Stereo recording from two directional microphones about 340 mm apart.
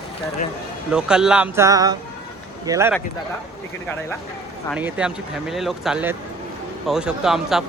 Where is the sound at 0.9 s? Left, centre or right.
Centre.